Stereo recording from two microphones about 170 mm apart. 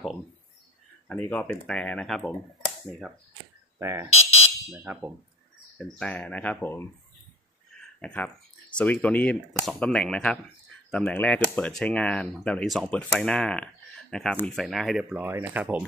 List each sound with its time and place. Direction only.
1.0 s speech: 10° left (ahead or behind)
3.7 s speech: 20° right (ahead or behind)
4.1 s fire alarm: 35° left (ahead or behind)
4.6 s speech: 10° right (ahead or behind)
5.8 s speech: 5° left (ahead or behind)
8.0 s speech: 5° left (ahead or behind); by 15.8 s 10° right (ahead or behind)